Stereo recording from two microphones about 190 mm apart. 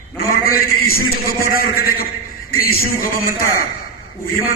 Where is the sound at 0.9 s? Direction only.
50° left (ahead or behind).